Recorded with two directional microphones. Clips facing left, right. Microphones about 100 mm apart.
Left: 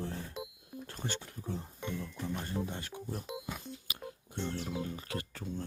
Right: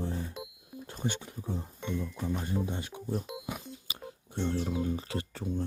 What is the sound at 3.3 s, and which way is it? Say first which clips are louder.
Music: right 2 dB; 15° right (ahead or behind).